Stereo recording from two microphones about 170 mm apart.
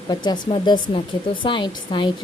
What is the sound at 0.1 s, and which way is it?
Speech, 25° left (ahead or behind).